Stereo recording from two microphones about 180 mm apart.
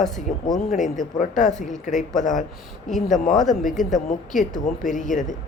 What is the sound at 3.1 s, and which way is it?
Speech, 45° left (ahead or behind).